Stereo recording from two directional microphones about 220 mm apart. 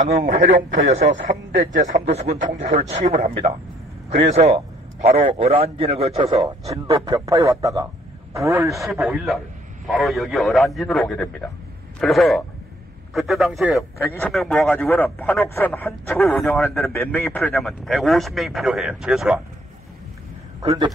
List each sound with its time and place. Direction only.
0.0 s a man's voice: 35° right (ahead or behind); by 8.7 s 15° right (ahead or behind)
8.9 s a man's voice: centre (ahead or behind)